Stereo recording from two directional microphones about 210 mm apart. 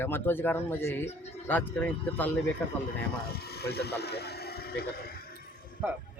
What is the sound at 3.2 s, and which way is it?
Speech, 50° left (ahead or behind).